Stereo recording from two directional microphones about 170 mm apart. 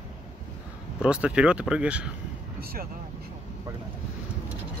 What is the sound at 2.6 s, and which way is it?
Speech, 65° right (ahead or behind).